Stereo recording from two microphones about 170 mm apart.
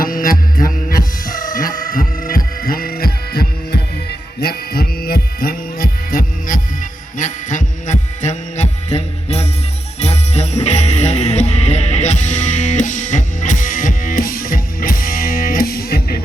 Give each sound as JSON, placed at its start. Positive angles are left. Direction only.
{"t": 0.0, "sound": "music", "side_deg": 55}
{"t": 1.5, "sound": "heart sounds", "side_deg": 55}
{"t": 7.2, "sound": "music", "side_deg": 50}